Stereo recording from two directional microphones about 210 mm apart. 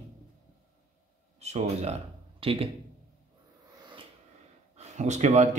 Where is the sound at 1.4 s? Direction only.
30° right (ahead or behind).